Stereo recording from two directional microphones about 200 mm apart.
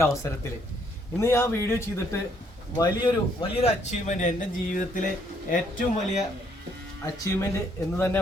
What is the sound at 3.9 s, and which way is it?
Speech, 40° left (ahead or behind).